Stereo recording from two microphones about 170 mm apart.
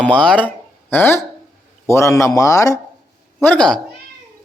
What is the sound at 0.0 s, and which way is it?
Speech, 5° left (ahead or behind).